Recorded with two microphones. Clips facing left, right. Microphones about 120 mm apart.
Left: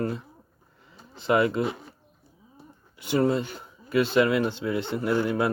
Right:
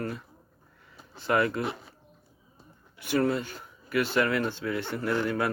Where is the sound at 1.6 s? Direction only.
Centre (ahead or behind).